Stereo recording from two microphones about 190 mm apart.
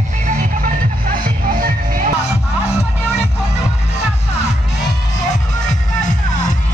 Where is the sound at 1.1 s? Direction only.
50° right (ahead or behind).